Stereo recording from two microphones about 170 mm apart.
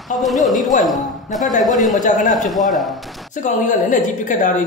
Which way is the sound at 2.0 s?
50° left (ahead or behind).